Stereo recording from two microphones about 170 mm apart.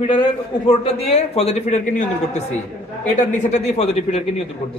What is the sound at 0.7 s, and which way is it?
A man's voice, 35° left (ahead or behind).